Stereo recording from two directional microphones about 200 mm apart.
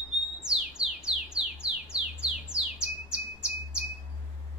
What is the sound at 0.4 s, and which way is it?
Bird, 5° right (ahead or behind).